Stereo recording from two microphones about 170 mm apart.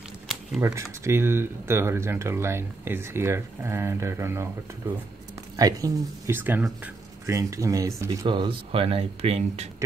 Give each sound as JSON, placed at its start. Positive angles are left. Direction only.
{"t": 0.6, "sound": "speech", "side_deg": -15}
{"t": 5.6, "sound": "speech", "side_deg": -20}